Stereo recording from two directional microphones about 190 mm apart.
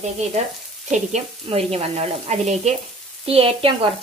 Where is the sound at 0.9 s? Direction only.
35° right (ahead or behind).